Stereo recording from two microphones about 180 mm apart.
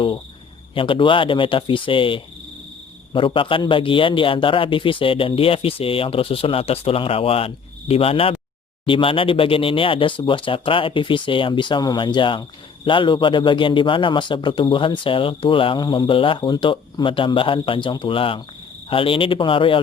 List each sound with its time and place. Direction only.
0.7 s a man's voice: 30° left (ahead or behind)